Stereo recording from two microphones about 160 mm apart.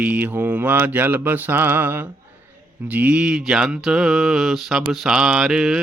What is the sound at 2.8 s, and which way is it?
Mantra, 10° right (ahead or behind).